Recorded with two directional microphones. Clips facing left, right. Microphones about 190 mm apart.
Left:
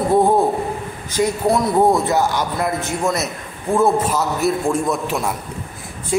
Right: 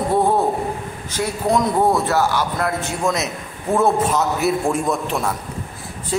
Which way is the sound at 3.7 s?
Centre (ahead or behind).